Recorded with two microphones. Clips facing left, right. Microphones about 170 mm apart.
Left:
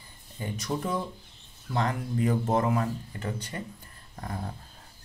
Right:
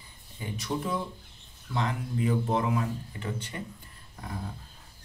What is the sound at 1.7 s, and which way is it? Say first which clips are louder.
A man's voice: left 2 dB; 45° left (ahead or behind).